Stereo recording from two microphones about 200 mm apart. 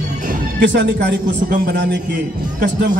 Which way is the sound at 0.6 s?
55° right (ahead or behind).